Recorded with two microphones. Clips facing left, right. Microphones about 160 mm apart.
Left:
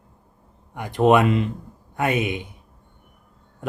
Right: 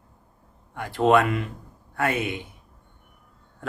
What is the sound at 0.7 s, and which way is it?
Speech, 15° left (ahead or behind).